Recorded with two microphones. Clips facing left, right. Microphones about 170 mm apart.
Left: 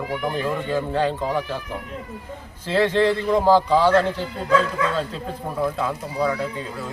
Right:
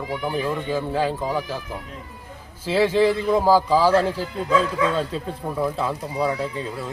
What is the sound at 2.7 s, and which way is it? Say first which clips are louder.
A man's voice: right 1 dB; 10° right (ahead or behind).